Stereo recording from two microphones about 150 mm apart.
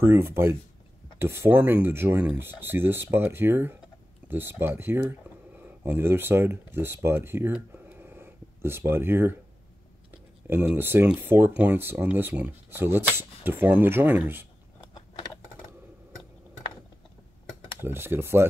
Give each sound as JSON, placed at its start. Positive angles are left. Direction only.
{"t": 0.0, "sound": "speech", "side_deg": -15}
{"t": 10.4, "sound": "speech", "side_deg": -10}
{"t": 17.8, "sound": "speech", "side_deg": -15}